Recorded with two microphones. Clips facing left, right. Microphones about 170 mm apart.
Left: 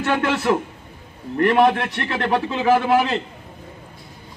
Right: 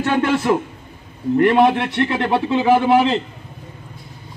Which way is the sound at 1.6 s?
10° right (ahead or behind).